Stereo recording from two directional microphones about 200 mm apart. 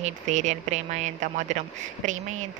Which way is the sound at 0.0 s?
35° right (ahead or behind).